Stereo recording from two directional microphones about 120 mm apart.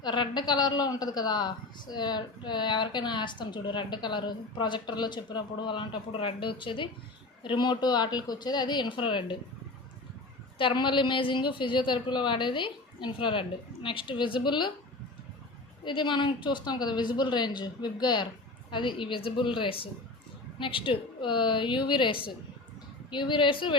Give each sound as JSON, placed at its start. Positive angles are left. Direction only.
{"t": 0.0, "sound": "a woman's voice", "side_deg": 40}
{"t": 10.6, "sound": "a woman's voice", "side_deg": 45}
{"t": 15.8, "sound": "a woman's voice", "side_deg": 45}